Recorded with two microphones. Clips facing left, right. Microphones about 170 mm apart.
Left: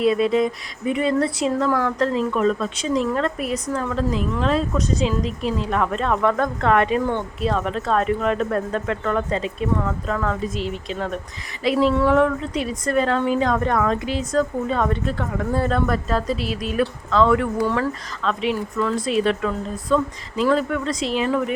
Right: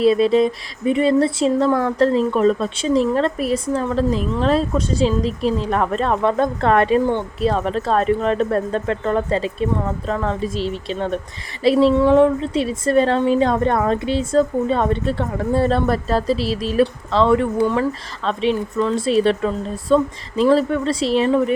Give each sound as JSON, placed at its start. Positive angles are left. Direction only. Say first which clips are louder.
{"t": 0.0, "sound": "a woman's voice", "louder": "right 4 dB", "side_deg": -30}